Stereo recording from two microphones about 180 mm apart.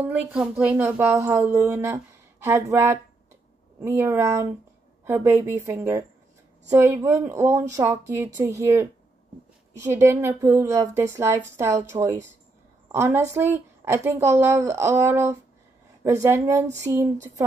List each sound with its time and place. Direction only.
0.0 s a woman's voice: 5° right (ahead or behind)